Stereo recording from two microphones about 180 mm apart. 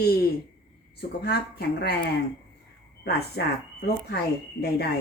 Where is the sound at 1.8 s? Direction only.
65° left (ahead or behind).